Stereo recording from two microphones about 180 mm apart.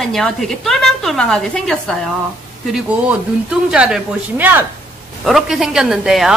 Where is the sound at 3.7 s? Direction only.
5° right (ahead or behind).